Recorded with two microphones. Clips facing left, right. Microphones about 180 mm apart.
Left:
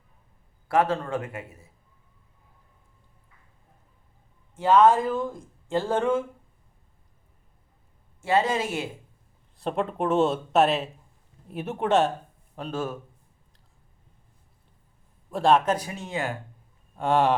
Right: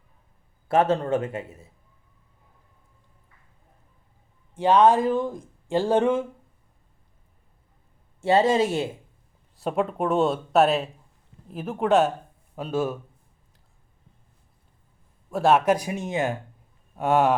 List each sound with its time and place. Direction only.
0.7 s a man's voice: 25° right (ahead or behind)
4.5 s speech: 15° right (ahead or behind)
8.2 s a man's voice: 30° right (ahead or behind)
9.6 s speech: 5° right (ahead or behind)
15.3 s speech: 5° right (ahead or behind)
17.0 s speech: 5° right (ahead or behind)